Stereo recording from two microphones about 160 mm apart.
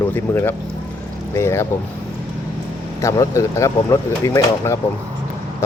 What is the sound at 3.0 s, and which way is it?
Speech, 20° left (ahead or behind).